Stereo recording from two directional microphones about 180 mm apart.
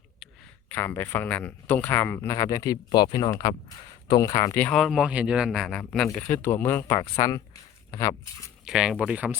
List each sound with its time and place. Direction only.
0.7 s speech: 10° left (ahead or behind)
4.5 s speech: 5° left (ahead or behind)
8.6 s speech: 5° right (ahead or behind)